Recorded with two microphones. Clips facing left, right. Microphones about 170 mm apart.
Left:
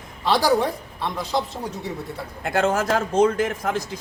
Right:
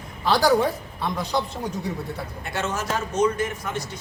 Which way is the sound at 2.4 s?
90° left.